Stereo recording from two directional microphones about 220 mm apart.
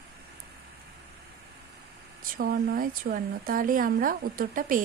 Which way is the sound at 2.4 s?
40° right (ahead or behind).